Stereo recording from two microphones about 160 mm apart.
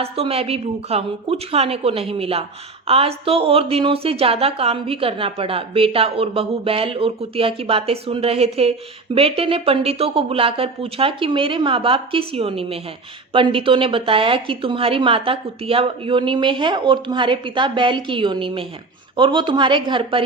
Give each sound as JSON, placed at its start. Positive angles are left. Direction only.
{"t": 0.0, "sound": "a woman's voice", "side_deg": -40}